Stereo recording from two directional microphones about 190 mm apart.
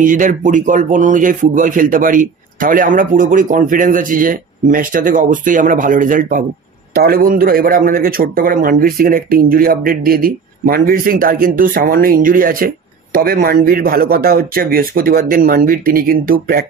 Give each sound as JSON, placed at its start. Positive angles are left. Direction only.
{"t": 0.0, "sound": "a man's voice", "side_deg": -45}